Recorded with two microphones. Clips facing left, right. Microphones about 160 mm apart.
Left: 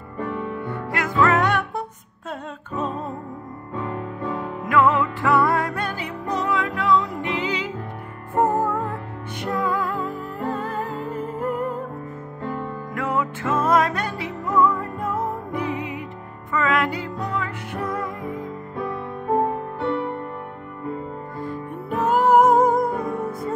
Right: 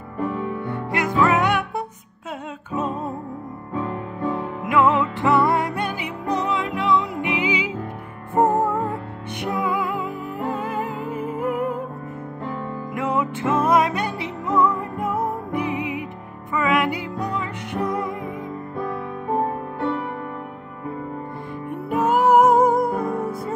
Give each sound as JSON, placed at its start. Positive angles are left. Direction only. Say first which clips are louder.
{"t": 0.7, "sound": "music", "louder": "right 2 dB", "side_deg": -15}
{"t": 4.6, "sound": "music", "louder": "even", "side_deg": -20}
{"t": 8.4, "sound": "music", "louder": "right 2 dB", "side_deg": -20}
{"t": 12.9, "sound": "music", "louder": "right 2 dB", "side_deg": -20}
{"t": 21.9, "sound": "music", "louder": "right 1 dB", "side_deg": -5}